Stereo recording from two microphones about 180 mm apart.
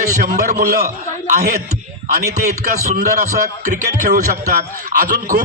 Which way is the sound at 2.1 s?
60° right (ahead or behind).